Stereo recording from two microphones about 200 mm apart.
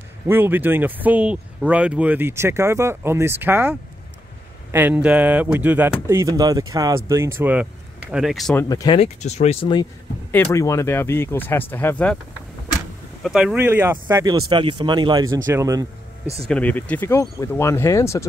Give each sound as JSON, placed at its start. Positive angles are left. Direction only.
{"t": 0.3, "sound": "speech", "side_deg": -10}
{"t": 8.5, "sound": "speech", "side_deg": 15}
{"t": 10.3, "sound": "speech", "side_deg": 10}
{"t": 13.2, "sound": "speech", "side_deg": -5}
{"t": 16.4, "sound": "speech", "side_deg": 5}